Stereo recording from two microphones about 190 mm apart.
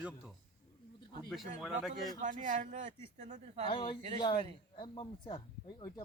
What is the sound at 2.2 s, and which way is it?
Speech, 40° right (ahead or behind).